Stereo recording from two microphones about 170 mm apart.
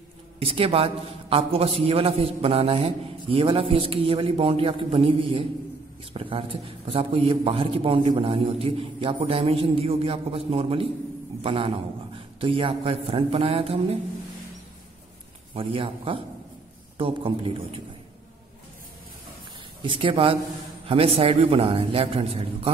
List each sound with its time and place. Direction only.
0.4 s a man's voice: 35° right (ahead or behind)
15.5 s a man's voice: 35° right (ahead or behind)
19.8 s a man's voice: 30° right (ahead or behind)